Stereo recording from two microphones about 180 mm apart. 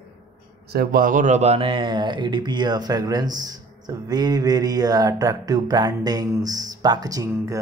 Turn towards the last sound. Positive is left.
turn(degrees=-20)  # may be behind; listen again after turning